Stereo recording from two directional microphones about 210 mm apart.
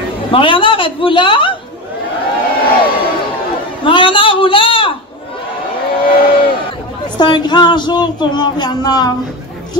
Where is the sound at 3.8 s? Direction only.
25° left (ahead or behind).